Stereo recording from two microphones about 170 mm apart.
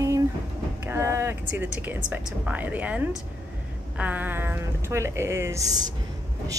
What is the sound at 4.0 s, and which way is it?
Speech, 10° right (ahead or behind).